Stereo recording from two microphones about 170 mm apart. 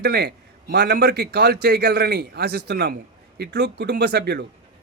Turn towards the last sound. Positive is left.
turn(degrees=-75)  # may be behind; listen again after turning